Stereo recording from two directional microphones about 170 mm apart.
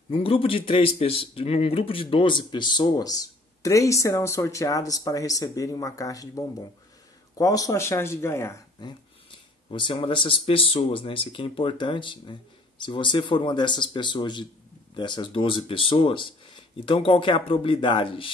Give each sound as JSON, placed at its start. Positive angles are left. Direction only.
{"t": 0.1, "sound": "speech", "side_deg": 30}
{"t": 9.7, "sound": "speech", "side_deg": 30}